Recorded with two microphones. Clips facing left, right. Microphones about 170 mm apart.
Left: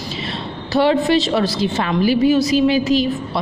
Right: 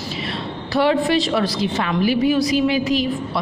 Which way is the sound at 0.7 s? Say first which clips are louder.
Left 2 dB; 25° left (ahead or behind).